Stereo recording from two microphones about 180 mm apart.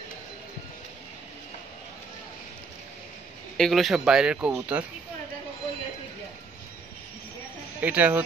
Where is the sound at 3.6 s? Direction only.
Centre (ahead or behind).